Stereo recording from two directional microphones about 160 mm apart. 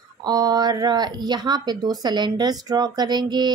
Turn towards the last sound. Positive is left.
turn(degrees=-25)  # may be behind; listen again after turning